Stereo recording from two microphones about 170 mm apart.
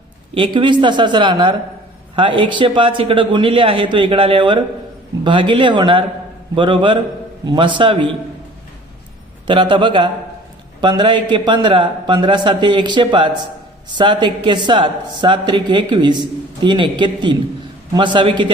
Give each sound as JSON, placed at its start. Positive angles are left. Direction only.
{"t": 0.3, "sound": "speech", "side_deg": -30}
{"t": 9.5, "sound": "speech", "side_deg": -30}